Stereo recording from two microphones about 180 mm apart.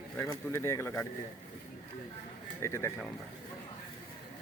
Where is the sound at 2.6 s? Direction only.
15° left (ahead or behind).